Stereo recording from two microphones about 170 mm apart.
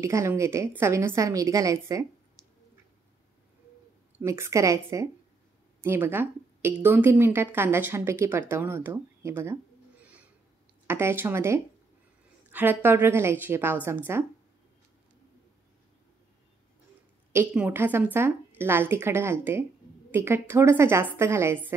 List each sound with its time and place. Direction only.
0.0 s a woman's voice: 15° right (ahead or behind)
4.2 s a woman's voice: 15° right (ahead or behind)
17.3 s a woman's voice: 15° right (ahead or behind)